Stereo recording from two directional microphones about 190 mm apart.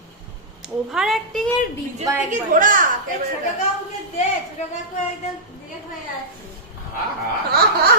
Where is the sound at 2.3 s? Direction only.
45° right (ahead or behind).